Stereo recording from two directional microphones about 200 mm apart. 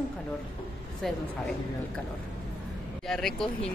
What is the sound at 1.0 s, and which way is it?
Speech, centre (ahead or behind).